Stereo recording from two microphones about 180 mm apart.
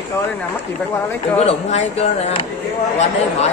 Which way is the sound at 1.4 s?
35° left (ahead or behind).